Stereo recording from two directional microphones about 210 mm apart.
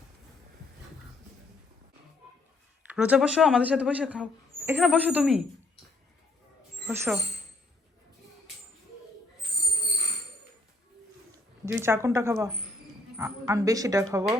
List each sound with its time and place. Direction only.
2.8 s a man's voice: 5° right (ahead or behind)
6.8 s a man's voice: 5° right (ahead or behind)
11.6 s a woman's voice: 10° right (ahead or behind)